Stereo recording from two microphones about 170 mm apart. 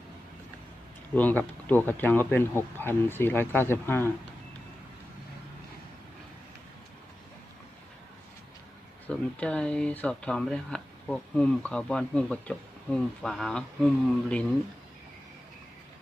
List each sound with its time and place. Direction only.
1.1 s speech: 10° left (ahead or behind)
9.0 s speech: 5° left (ahead or behind)